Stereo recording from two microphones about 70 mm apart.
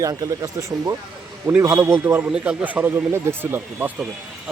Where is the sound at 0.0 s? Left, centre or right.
Right.